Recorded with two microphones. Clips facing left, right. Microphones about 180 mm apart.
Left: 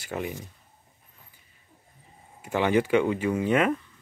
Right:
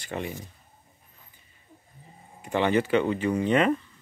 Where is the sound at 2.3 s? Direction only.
5° left (ahead or behind).